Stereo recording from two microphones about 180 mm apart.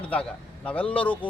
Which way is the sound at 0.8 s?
30° left (ahead or behind).